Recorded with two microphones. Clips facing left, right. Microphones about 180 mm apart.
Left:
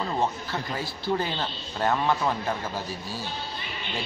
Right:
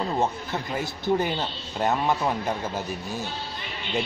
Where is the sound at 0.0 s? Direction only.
20° right (ahead or behind).